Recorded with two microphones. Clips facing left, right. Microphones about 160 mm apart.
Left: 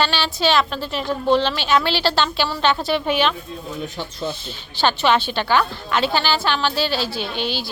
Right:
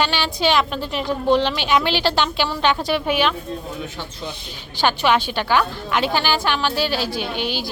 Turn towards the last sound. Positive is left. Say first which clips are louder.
# right 1 dB
turn(degrees=-15)  # may be behind; listen again after turning